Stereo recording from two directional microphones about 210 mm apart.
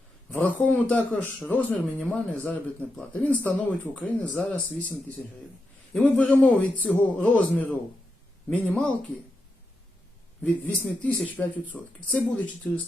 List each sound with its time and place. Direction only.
0.3 s speech: 5° left (ahead or behind)
10.4 s a man's voice: 5° left (ahead or behind)